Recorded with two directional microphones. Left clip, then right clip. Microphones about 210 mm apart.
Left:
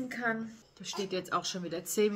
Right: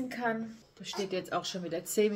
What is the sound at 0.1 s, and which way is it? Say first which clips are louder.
Speech: left 1 dB; 10° left (ahead or behind).